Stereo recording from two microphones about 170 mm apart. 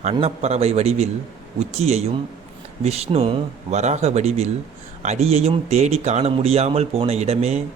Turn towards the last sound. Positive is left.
turn(degrees=-40)  # may be behind; listen again after turning